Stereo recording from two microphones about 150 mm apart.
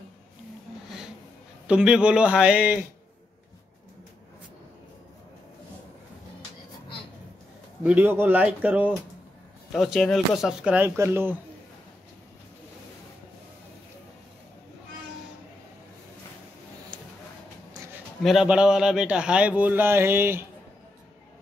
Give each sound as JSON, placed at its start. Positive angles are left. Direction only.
{"t": 1.7, "sound": "a man's voice", "side_deg": -5}
{"t": 7.8, "sound": "a man's voice", "side_deg": -10}
{"t": 9.7, "sound": "speech", "side_deg": 0}
{"t": 16.9, "sound": "a sound", "side_deg": -30}
{"t": 18.2, "sound": "a man's voice", "side_deg": -5}